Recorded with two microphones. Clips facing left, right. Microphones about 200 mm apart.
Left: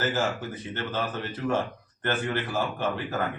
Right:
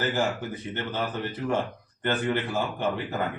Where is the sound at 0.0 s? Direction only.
15° right (ahead or behind).